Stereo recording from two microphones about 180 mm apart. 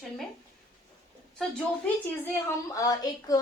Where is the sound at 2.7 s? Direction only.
20° left (ahead or behind).